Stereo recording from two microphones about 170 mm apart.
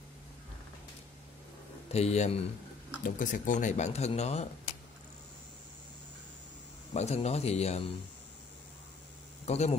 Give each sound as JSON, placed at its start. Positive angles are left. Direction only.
{"t": 1.9, "sound": "speech", "side_deg": 40}
{"t": 3.0, "sound": "speech", "side_deg": 50}
{"t": 6.9, "sound": "speech", "side_deg": 40}
{"t": 9.5, "sound": "speech", "side_deg": 40}